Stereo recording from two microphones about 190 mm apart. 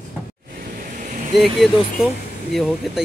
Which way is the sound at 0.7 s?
40° right (ahead or behind).